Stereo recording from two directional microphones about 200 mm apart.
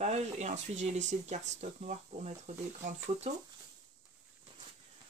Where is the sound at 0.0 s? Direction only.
35° right (ahead or behind).